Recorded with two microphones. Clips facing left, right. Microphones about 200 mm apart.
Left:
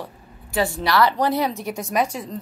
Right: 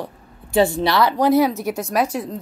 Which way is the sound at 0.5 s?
25° right (ahead or behind).